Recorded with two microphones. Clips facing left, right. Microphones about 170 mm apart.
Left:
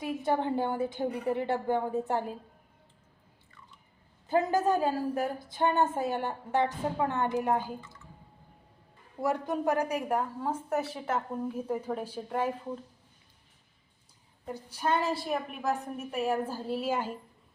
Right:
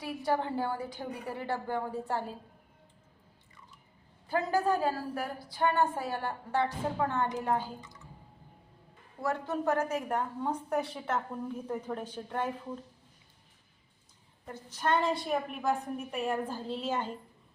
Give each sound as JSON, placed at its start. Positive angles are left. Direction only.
{"t": 0.0, "sound": "a woman's voice", "side_deg": 20}
{"t": 4.3, "sound": "a woman's voice", "side_deg": 20}
{"t": 7.8, "sound": "speech", "side_deg": -15}
{"t": 9.2, "sound": "a woman's voice", "side_deg": 15}
{"t": 14.4, "sound": "a woman's voice", "side_deg": 10}